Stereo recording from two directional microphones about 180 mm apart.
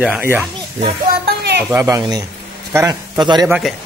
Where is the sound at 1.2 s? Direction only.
65° right (ahead or behind).